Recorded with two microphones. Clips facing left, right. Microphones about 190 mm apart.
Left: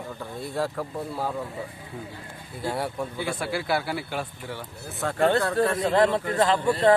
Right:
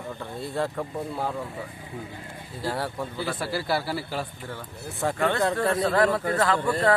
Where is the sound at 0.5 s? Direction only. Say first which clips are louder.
Even; centre (ahead or behind).